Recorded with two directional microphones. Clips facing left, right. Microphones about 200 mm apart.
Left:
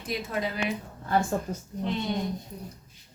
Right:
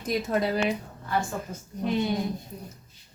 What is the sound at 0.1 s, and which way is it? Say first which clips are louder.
Speech: right 5 dB; 45° right (ahead or behind).